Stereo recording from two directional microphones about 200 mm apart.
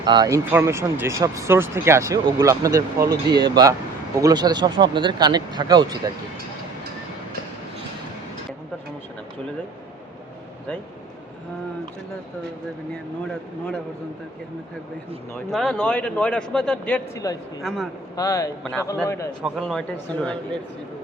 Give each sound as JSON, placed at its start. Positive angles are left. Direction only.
{"t": 0.0, "sound": "speech", "side_deg": -20}
{"t": 15.4, "sound": "a man's voice", "side_deg": 5}
{"t": 17.6, "sound": "a man's voice", "side_deg": 0}
{"t": 18.2, "sound": "speech", "side_deg": 15}
{"t": 19.4, "sound": "a man's voice", "side_deg": 0}